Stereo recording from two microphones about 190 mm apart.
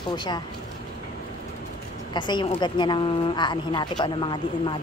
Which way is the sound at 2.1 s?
25° left (ahead or behind).